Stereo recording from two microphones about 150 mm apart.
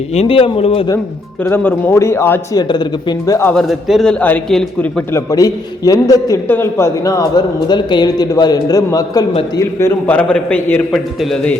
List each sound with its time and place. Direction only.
0.1 s speech: 40° left (ahead or behind)
1.4 s a man's voice: 10° left (ahead or behind)
2.6 s a man's voice: 30° left (ahead or behind)
3.5 s a man's voice: centre (ahead or behind)
5.3 s a man's voice: 25° left (ahead or behind); by 11.5 s centre (ahead or behind)